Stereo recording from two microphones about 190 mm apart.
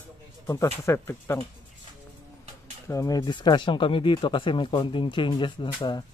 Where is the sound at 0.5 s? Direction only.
15° left (ahead or behind).